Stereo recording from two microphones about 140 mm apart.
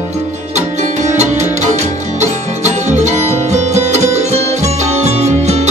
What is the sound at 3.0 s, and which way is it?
Music, 55° right (ahead or behind).